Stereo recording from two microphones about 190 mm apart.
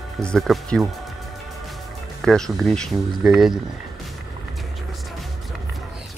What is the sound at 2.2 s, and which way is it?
Speech, centre (ahead or behind).